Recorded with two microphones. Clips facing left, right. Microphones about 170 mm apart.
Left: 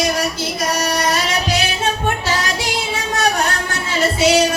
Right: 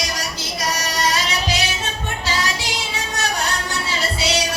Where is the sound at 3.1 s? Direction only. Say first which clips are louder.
Left 7 dB; 55° left (ahead or behind).